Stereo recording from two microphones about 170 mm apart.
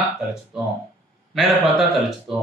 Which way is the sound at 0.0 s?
5° right (ahead or behind).